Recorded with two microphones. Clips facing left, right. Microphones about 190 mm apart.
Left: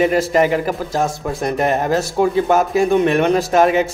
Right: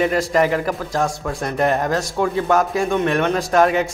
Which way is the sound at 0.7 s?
20° left (ahead or behind).